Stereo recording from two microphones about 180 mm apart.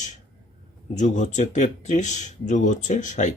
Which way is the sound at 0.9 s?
40° left (ahead or behind).